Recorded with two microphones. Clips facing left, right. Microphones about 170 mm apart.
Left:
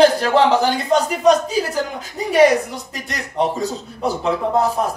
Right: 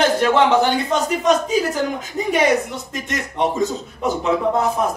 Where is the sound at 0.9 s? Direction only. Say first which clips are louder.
Left 7 dB; 35° left (ahead or behind).